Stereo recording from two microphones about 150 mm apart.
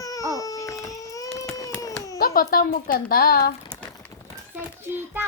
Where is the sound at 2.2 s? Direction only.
80° left.